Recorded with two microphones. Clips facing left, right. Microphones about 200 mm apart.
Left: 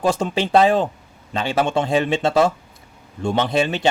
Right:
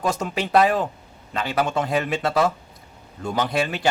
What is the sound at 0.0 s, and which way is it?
A man's voice, 30° left (ahead or behind).